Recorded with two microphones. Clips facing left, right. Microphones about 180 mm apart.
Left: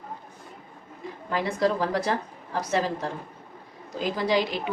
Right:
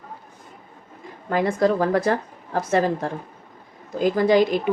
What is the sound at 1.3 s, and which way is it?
A woman's voice, 50° right (ahead or behind).